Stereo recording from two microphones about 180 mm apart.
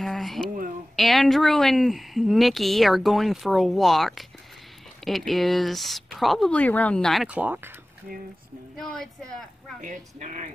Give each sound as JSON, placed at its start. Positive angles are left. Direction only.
{"t": 0.0, "sound": "a sound", "side_deg": 0}
{"t": 0.9, "sound": "speech", "side_deg": 0}
{"t": 8.7, "sound": "speech", "side_deg": 0}
{"t": 9.8, "sound": "speech", "side_deg": -40}